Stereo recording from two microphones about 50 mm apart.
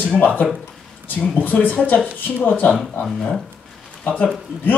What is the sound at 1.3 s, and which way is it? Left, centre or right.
Speech, left.